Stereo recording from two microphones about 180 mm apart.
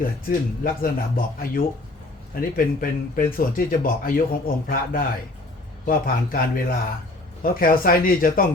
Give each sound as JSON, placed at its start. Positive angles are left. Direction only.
{"t": 0.0, "sound": "speech", "side_deg": 50}